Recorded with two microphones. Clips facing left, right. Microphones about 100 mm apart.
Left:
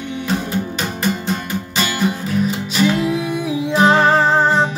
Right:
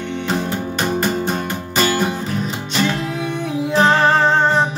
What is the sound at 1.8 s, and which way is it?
Music, 40° right (ahead or behind).